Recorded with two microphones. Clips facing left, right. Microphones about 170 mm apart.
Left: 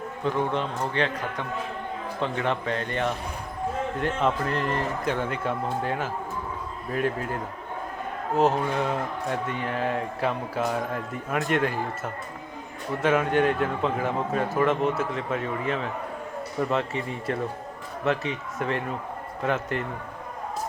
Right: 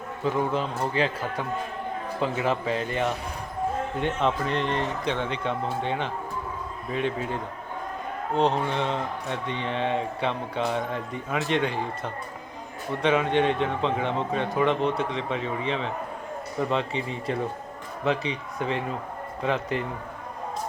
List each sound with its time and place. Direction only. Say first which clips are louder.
0.3 s a man's voice: right 1 dB; 5° right (ahead or behind)
8.4 s a man's voice: left 1 dB; 5° left (ahead or behind)